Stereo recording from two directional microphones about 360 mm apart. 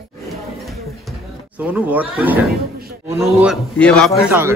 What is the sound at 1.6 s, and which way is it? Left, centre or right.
A man's voice, centre.